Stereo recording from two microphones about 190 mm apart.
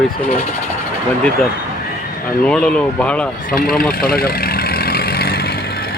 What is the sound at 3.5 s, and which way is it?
Vehicle, 50° left (ahead or behind).